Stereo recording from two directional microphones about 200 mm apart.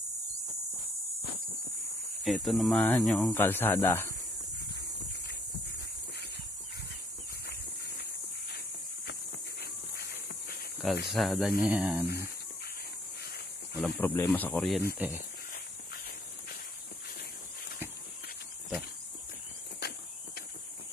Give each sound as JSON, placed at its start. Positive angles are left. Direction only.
{"t": 2.2, "sound": "speech", "side_deg": 0}
{"t": 9.6, "sound": "a sound", "side_deg": 50}
{"t": 10.8, "sound": "speech", "side_deg": 0}
{"t": 13.7, "sound": "speech", "side_deg": 5}
{"t": 15.0, "sound": "speech", "side_deg": -10}